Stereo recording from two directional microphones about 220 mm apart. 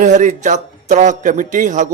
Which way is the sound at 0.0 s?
35° right (ahead or behind).